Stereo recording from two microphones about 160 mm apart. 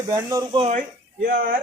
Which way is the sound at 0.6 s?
45° right (ahead or behind).